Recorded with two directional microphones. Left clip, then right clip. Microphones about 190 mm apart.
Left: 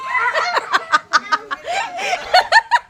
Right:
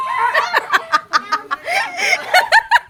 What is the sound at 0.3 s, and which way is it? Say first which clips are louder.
Snicker: right 2 dB; 10° left (ahead or behind).